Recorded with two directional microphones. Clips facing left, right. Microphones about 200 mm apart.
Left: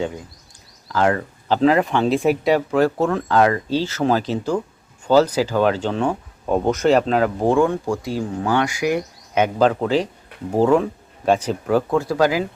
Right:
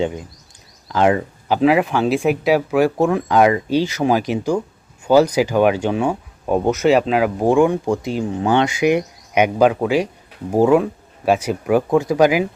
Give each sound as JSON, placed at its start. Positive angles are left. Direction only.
{"t": 0.0, "sound": "speech", "side_deg": -20}